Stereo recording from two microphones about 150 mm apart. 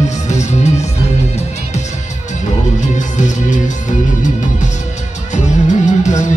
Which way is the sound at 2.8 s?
55° left (ahead or behind).